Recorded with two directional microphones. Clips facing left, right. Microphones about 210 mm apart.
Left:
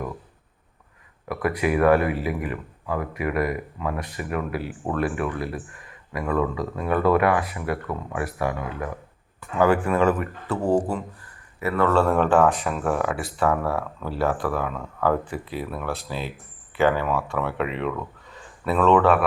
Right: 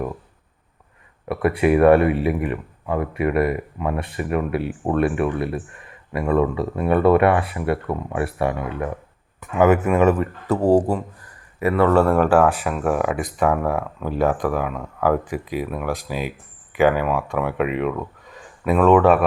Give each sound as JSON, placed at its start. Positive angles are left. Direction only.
{"t": 1.3, "sound": "speech", "side_deg": -30}
{"t": 10.5, "sound": "speech", "side_deg": -35}
{"t": 11.6, "sound": "speech", "side_deg": -15}